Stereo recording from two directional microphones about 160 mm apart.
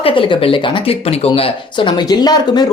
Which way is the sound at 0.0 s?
30° left (ahead or behind).